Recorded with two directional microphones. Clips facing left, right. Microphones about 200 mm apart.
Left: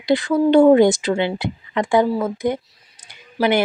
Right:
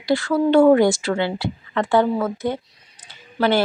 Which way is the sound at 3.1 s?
15° left (ahead or behind).